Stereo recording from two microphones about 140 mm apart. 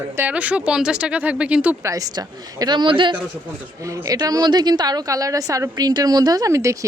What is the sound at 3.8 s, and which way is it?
A woman's voice, 25° right (ahead or behind).